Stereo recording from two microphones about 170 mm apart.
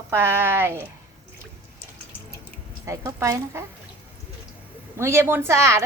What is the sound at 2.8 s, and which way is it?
Speech, 15° right (ahead or behind).